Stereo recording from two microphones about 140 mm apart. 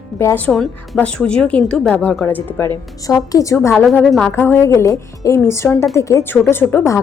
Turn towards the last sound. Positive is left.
turn(degrees=20)  # may be behind; listen again after turning